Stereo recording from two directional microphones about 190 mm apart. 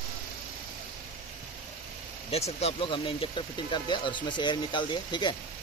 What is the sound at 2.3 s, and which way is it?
Speech, 35° left (ahead or behind).